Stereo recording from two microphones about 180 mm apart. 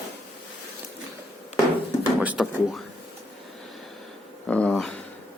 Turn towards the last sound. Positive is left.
turn(degrees=5)  # may be behind; listen again after turning